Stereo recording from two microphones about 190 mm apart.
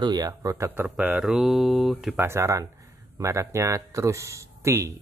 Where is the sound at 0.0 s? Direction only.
20° right (ahead or behind); by 2.2 s centre (ahead or behind).